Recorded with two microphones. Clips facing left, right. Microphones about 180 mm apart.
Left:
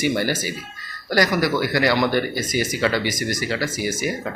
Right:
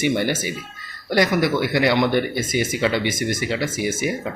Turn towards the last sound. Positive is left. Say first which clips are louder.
# right 1 dB
turn(degrees=-25)  # may be behind; listen again after turning